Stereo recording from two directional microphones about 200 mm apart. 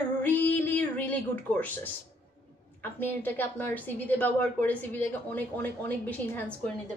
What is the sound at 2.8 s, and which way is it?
A woman's voice, 10° left (ahead or behind).